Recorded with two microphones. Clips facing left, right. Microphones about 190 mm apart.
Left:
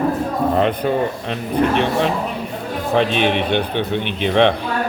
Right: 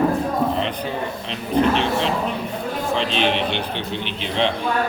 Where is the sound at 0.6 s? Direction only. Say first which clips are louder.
Left 7 dB; 50° left (ahead or behind).